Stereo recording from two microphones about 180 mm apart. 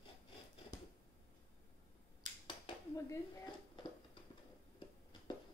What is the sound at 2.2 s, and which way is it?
Finger snapping, 25° left (ahead or behind).